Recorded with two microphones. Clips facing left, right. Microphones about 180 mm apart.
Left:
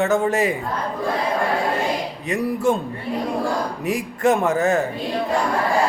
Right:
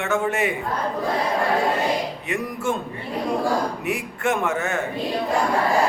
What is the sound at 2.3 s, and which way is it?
Speech, 35° left (ahead or behind).